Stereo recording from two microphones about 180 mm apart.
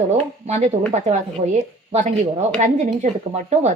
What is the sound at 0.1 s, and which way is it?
Speech, 40° right (ahead or behind).